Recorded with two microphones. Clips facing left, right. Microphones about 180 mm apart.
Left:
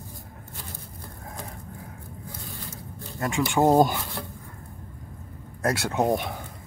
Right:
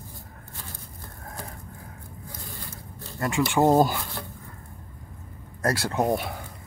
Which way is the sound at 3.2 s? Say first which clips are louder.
Even; centre (ahead or behind).